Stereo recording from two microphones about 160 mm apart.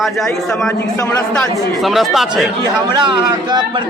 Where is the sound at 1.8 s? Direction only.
Centre (ahead or behind).